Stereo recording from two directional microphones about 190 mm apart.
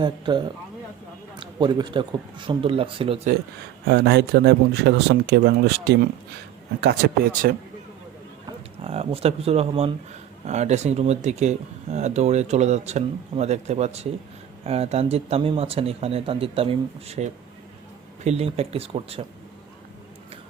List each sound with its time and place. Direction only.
0.0 s speech: 25° right (ahead or behind)
3.8 s speech: 60° right (ahead or behind)
8.4 s speech: 30° right (ahead or behind)